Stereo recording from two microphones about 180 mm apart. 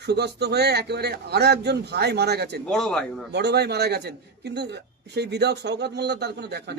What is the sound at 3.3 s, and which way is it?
A man's voice, 65° right (ahead or behind).